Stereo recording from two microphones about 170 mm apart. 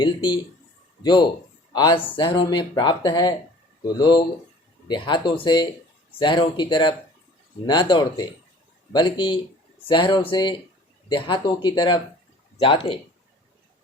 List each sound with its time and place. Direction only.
0.0 s speech: 25° left (ahead or behind)